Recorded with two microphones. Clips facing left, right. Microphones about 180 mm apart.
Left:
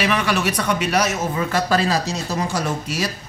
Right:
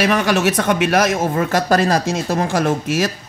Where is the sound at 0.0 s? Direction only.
40° right (ahead or behind).